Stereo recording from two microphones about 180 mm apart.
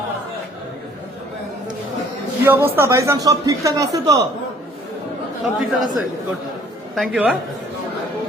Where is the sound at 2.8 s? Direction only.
15° right (ahead or behind).